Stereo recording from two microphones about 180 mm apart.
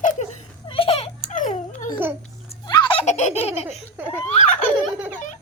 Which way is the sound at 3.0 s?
40° left (ahead or behind).